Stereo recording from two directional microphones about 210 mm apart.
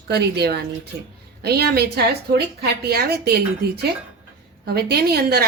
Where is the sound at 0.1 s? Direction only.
50° right (ahead or behind).